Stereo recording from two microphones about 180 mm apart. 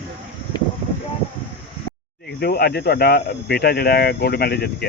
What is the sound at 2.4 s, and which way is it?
Speech, 60° left (ahead or behind).